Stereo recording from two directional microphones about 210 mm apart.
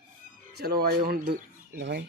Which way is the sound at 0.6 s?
45° right (ahead or behind).